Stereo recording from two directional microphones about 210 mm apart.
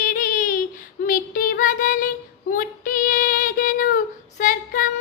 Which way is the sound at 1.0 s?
40° left (ahead or behind).